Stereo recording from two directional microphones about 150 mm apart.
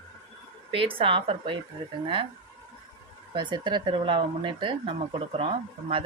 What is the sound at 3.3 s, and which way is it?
Speech, 30° right (ahead or behind).